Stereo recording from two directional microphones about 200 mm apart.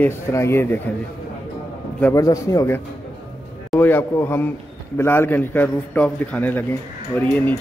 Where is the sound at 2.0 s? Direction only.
15° left (ahead or behind).